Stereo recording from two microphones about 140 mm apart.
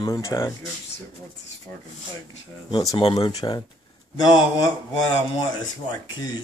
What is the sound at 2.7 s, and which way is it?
Speech, 30° left (ahead or behind).